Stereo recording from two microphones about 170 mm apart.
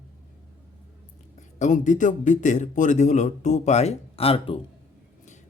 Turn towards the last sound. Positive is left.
turn(degrees=35)  # may be behind; listen again after turning